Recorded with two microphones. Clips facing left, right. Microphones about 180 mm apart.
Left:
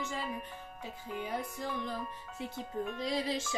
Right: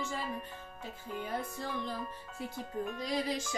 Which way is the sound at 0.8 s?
15° left (ahead or behind).